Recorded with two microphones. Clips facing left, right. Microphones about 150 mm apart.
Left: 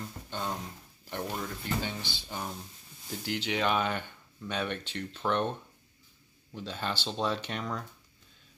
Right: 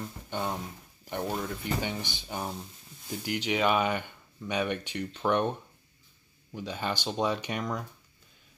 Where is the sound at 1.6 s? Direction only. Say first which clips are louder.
Right 2 dB; 15° right (ahead or behind).